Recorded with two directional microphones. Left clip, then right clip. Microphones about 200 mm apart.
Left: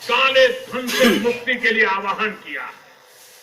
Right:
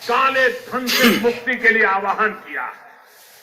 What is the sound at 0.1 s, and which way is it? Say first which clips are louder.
A man's voice: left 1 dB; 20° right (ahead or behind).